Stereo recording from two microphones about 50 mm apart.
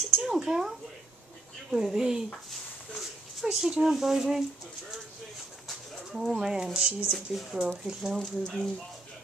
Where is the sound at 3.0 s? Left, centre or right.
Centre.